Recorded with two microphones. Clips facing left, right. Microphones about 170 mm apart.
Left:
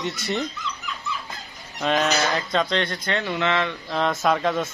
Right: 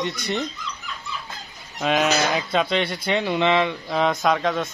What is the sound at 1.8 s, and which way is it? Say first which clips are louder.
Speech: right 1 dB; 5° right (ahead or behind).